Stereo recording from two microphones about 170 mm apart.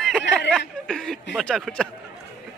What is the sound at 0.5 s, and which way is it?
Chuckle, 5° left (ahead or behind).